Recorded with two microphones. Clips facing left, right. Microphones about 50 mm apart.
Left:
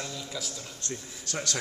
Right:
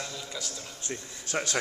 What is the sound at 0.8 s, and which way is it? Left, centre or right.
Speech, right.